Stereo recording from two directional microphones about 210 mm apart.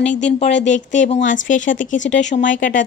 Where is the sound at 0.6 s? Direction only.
35° left (ahead or behind).